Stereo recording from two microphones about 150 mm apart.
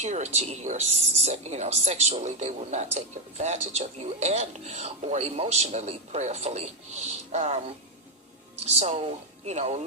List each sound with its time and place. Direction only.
0.0 s speech: 50° right (ahead or behind)